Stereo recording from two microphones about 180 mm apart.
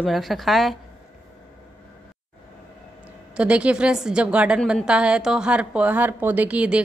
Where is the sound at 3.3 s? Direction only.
5° right (ahead or behind).